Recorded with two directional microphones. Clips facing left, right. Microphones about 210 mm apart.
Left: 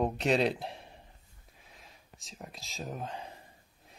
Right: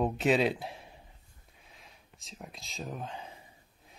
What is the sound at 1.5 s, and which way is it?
Whispering, centre (ahead or behind).